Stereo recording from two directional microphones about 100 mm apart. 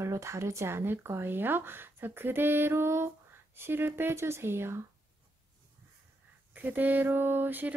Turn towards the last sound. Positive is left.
turn(degrees=-20)  # may be behind; listen again after turning